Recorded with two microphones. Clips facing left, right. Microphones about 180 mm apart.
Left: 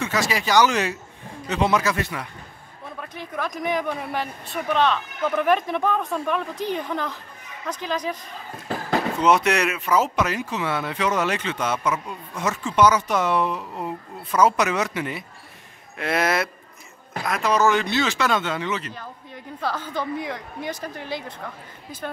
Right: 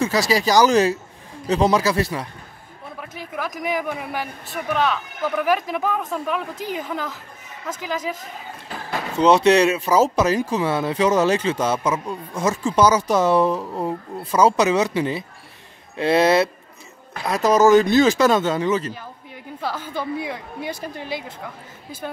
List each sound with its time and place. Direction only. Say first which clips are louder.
0.0 s speech: right 5 dB; 35° right (ahead or behind)
3.0 s a woman's voice: even; 5° right (ahead or behind)
9.2 s speech: right 7 dB; 30° right (ahead or behind)
17.3 s speech: right 6 dB; 40° right (ahead or behind)
19.6 s a woman's voice: even; 10° right (ahead or behind)